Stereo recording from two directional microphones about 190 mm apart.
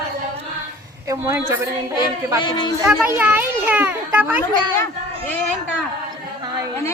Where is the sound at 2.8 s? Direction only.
10° right (ahead or behind).